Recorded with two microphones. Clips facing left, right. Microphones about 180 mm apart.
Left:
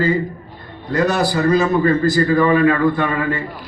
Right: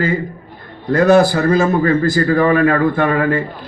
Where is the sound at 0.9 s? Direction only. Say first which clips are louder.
Right 6 dB; 50° right (ahead or behind).